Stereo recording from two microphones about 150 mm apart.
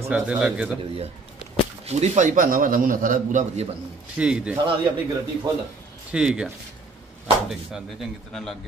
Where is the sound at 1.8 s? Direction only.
45° right (ahead or behind).